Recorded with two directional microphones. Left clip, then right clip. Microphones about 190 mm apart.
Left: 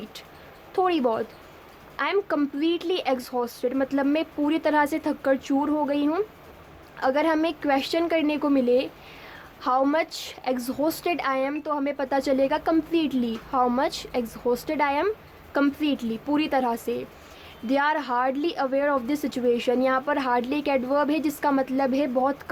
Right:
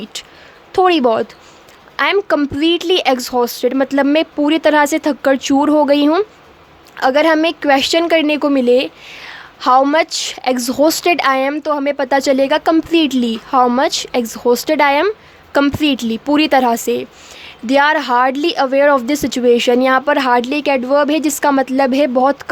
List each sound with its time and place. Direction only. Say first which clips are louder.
0.7 s a woman's voice: right 11 dB; 30° right (ahead or behind)